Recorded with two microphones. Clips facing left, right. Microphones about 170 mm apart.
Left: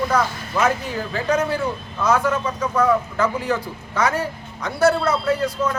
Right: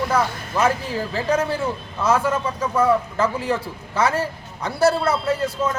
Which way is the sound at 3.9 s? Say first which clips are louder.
Right 1 dB; 30° right (ahead or behind).